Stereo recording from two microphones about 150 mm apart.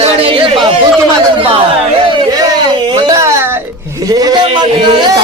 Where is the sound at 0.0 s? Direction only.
35° right (ahead or behind).